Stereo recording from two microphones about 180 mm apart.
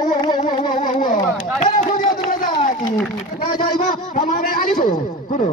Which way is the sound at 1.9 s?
50° left (ahead or behind).